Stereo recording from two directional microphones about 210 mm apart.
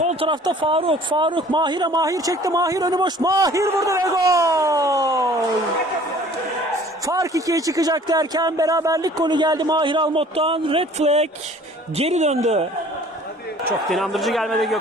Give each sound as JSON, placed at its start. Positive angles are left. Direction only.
{"t": 0.0, "sound": "speech", "side_deg": -30}
{"t": 7.1, "sound": "speech", "side_deg": -15}
{"t": 13.9, "sound": "a man's voice", "side_deg": 0}